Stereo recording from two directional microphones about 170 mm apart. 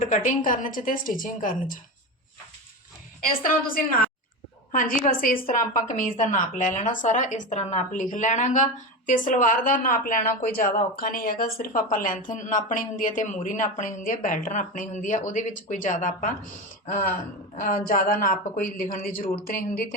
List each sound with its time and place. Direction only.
0.0 s a woman's voice: 50° left (ahead or behind)
4.7 s a woman's voice: 55° left (ahead or behind)